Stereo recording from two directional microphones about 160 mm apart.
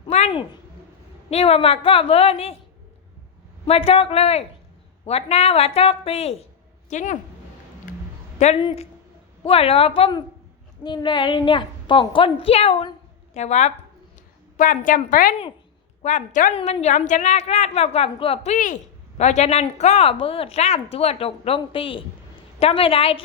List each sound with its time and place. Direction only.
0.1 s a sound: 45° left (ahead or behind)
1.3 s a woman's voice: 40° left (ahead or behind)
3.7 s a woman's voice: 35° left (ahead or behind)
6.9 s a woman's voice: 50° left (ahead or behind)
7.9 s a sound: 60° left (ahead or behind)
8.4 s a woman's voice: 45° left (ahead or behind)
16.6 s a woman's voice: 40° left (ahead or behind)
18.5 s a woman's voice: 50° left (ahead or behind)